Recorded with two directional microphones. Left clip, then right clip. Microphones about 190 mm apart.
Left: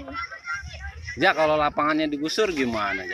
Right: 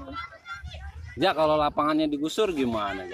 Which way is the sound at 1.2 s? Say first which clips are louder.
Left 2 dB; 5° right (ahead or behind).